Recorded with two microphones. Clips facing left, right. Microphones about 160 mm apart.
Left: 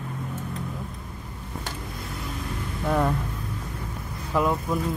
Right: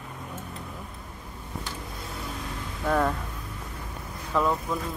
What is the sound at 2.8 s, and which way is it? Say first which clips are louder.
Speech: left 1 dB; 10° left (ahead or behind).